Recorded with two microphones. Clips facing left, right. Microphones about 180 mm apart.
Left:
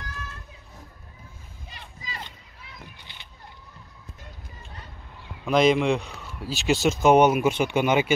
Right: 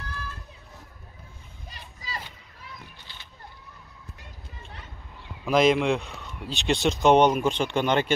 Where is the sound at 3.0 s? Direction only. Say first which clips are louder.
Even; 15° left (ahead or behind).